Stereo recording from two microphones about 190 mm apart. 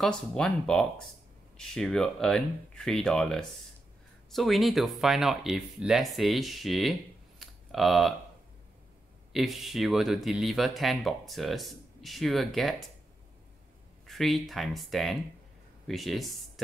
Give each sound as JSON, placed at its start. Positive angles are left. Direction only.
{"t": 0.0, "sound": "speech", "side_deg": 5}
{"t": 9.3, "sound": "speech", "side_deg": 0}
{"t": 14.0, "sound": "speech", "side_deg": 0}